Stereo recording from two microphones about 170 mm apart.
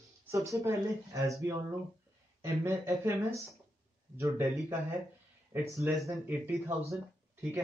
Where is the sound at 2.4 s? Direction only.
15° right (ahead or behind).